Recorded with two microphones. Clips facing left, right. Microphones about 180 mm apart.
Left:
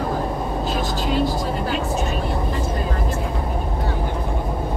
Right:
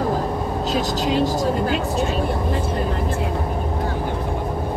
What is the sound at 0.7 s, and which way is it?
Speech, 40° right (ahead or behind).